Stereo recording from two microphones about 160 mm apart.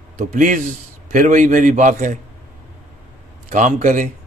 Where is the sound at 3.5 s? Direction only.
50° right (ahead or behind).